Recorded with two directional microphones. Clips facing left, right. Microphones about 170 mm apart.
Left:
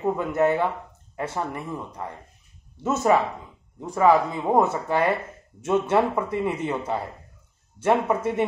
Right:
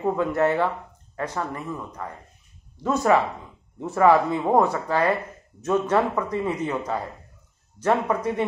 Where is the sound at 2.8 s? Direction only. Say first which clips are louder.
Even; 20° left (ahead or behind).